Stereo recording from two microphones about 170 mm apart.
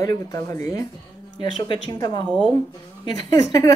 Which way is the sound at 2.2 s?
5° left (ahead or behind).